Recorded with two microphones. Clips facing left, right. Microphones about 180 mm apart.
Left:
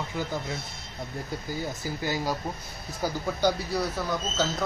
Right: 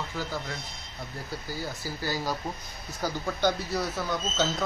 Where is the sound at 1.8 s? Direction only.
20° left (ahead or behind).